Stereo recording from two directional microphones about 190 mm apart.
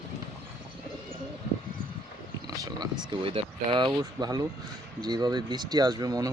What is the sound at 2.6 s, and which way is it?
Speech, 20° right (ahead or behind).